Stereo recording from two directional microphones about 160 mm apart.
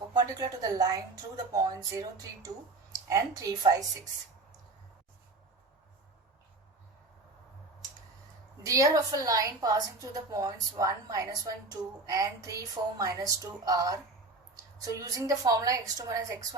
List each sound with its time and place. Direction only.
0.1 s a woman's voice: 25° right (ahead or behind)
8.6 s a woman's voice: 20° right (ahead or behind)